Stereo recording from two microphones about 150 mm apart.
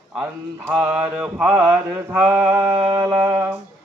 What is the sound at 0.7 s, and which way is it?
Music, 10° right (ahead or behind).